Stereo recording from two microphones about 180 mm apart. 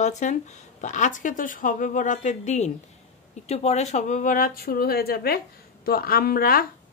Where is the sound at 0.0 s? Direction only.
40° left (ahead or behind).